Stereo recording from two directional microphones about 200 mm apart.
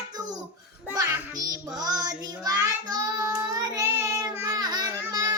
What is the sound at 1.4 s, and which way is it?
Child singing, 20° right (ahead or behind).